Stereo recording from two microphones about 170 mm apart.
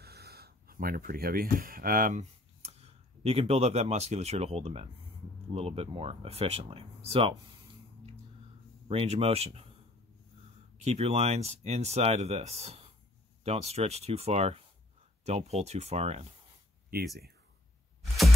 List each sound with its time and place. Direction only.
0.0 s speech: 65° right (ahead or behind)
2.6 s speech: 35° right (ahead or behind)
8.8 s speech: 35° right (ahead or behind)
10.8 s speech: 40° right (ahead or behind)